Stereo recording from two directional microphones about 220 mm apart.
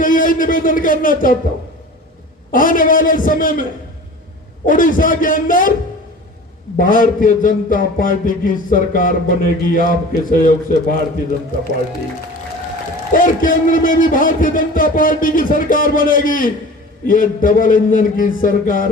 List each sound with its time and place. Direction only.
0.0 s a sound: 40° left (ahead or behind)
2.5 s a man's voice: 40° left (ahead or behind)
6.7 s a man's voice: 40° left (ahead or behind)
13.1 s a man's voice: 40° left (ahead or behind)